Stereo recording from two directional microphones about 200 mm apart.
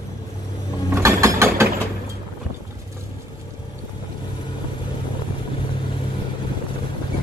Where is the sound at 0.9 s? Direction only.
15° right (ahead or behind).